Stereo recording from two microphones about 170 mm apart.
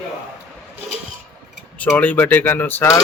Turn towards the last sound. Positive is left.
turn(degrees=15)  # may be behind; listen again after turning